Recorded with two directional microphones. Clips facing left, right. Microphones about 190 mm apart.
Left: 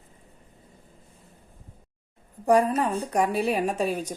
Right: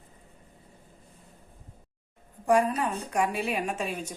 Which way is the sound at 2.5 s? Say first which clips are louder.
Left 3 dB; 35° left (ahead or behind).